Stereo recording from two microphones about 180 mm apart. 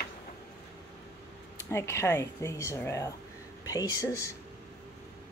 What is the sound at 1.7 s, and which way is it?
Speech, 15° left (ahead or behind).